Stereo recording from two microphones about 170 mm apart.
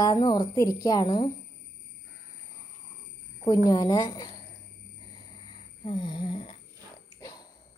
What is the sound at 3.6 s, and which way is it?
Speech, 25° left (ahead or behind).